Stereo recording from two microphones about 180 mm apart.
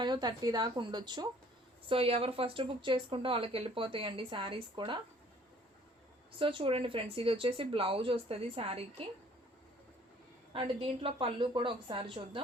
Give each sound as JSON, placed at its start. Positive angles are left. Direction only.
{"t": 0.0, "sound": "a woman's voice", "side_deg": -25}
{"t": 6.4, "sound": "speech", "side_deg": -30}
{"t": 10.5, "sound": "a woman's voice", "side_deg": -30}